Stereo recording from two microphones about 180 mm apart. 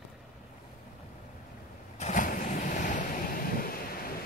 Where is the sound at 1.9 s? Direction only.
40° left (ahead or behind).